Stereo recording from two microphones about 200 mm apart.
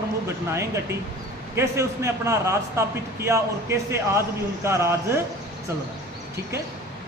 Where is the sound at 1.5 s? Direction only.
15° right (ahead or behind).